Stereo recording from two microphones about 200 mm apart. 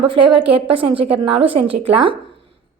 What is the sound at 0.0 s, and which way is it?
A woman's voice, 25° right (ahead or behind).